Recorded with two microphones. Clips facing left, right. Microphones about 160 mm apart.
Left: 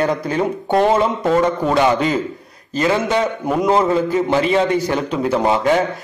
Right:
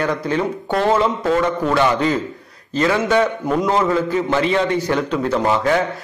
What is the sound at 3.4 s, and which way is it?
Speech, 15° left (ahead or behind).